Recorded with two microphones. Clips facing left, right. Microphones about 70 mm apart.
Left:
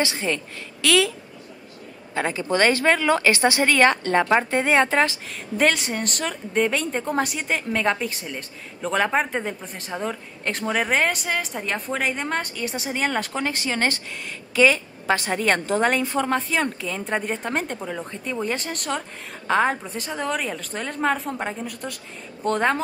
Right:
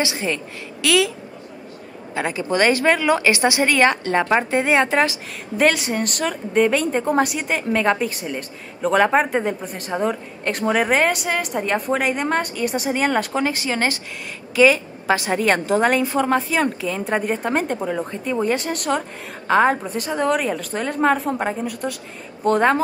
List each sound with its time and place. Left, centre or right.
0.0 s a woman's voice: centre
2.1 s a woman's voice: centre
5.6 s a woman's voice: centre